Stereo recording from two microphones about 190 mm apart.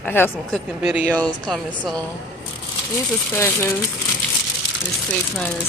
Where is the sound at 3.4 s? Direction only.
15° left (ahead or behind).